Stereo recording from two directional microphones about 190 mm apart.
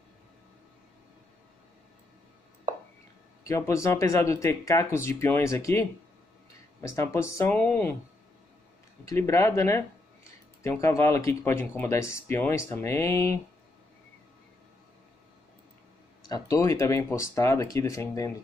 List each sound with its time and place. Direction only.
3.4 s speech: 15° left (ahead or behind)
9.0 s speech: 15° left (ahead or behind)
16.3 s speech: 20° left (ahead or behind)